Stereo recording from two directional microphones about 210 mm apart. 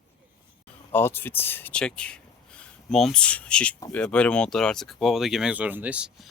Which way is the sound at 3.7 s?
15° left (ahead or behind).